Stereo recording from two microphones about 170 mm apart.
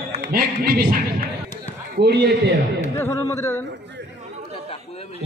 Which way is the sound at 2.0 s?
75° right (ahead or behind).